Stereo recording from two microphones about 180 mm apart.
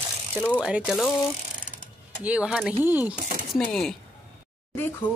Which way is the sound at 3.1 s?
50° right (ahead or behind).